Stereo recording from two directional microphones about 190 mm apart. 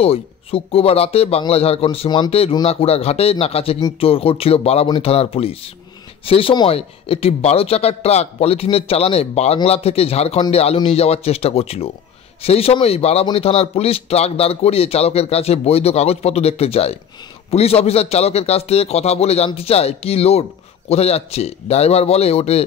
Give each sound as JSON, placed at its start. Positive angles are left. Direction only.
{"t": 0.0, "sound": "a man's voice", "side_deg": 30}